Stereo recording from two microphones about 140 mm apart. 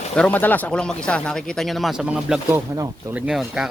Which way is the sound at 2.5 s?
25° right (ahead or behind).